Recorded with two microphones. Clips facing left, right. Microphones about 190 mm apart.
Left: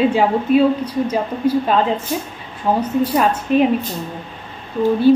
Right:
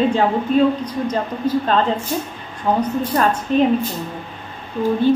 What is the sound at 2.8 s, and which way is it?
Speech, 10° left (ahead or behind).